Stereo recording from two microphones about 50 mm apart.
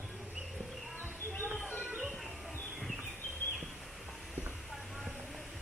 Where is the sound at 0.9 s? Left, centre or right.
Left.